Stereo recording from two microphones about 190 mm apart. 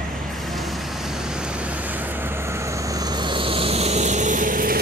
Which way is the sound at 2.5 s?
15° right (ahead or behind).